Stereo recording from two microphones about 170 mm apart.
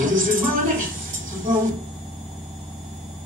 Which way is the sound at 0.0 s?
50° right (ahead or behind).